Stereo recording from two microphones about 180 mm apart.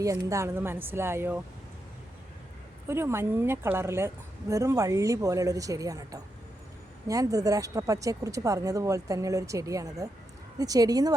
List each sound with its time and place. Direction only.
0.0 s a woman's voice: 20° right (ahead or behind)
2.8 s a woman's voice: 15° right (ahead or behind)